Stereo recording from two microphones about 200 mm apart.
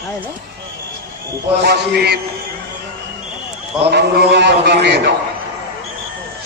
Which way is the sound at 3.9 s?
55° right (ahead or behind).